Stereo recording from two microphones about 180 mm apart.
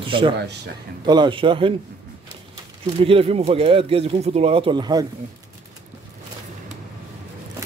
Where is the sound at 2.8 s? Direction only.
30° right (ahead or behind).